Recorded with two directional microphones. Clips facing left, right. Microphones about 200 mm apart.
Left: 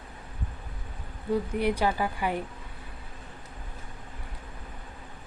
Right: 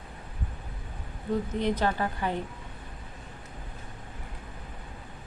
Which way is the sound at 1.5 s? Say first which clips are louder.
Even; 10° left (ahead or behind).